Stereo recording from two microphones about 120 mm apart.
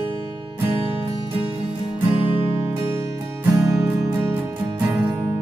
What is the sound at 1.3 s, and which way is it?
Music, 50° right (ahead or behind).